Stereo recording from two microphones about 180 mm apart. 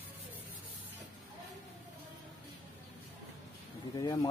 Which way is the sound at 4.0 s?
20° left (ahead or behind).